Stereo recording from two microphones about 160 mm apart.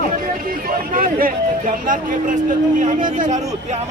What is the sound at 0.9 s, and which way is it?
Speech, 60° right (ahead or behind).